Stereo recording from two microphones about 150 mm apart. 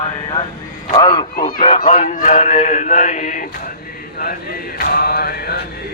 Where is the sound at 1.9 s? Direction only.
55° left (ahead or behind).